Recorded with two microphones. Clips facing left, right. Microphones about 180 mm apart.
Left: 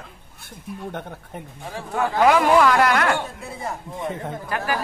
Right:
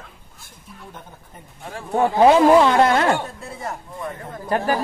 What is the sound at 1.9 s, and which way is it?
Speech, 30° right (ahead or behind).